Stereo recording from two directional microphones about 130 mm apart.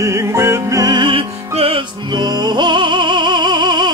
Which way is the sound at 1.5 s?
50° right (ahead or behind).